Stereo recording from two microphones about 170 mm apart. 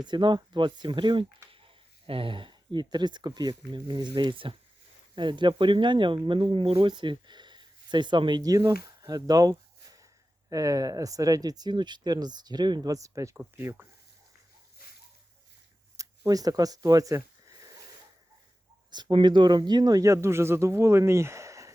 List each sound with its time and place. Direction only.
0.0 s speech: 25° right (ahead or behind)
14.8 s a sound: 60° left (ahead or behind)
16.0 s speech: 20° right (ahead or behind)
18.9 s speech: 25° right (ahead or behind)